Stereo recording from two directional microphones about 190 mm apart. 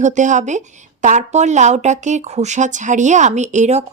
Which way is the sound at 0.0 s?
40° right (ahead or behind).